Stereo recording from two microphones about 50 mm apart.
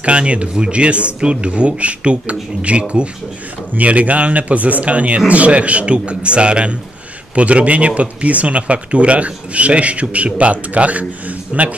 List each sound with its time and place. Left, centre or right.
0.0 s a man's voice: right